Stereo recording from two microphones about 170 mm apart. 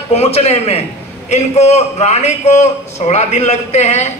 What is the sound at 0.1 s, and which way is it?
A man's voice, 40° left (ahead or behind).